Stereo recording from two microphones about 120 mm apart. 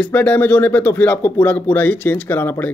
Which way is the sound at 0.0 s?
15° left (ahead or behind).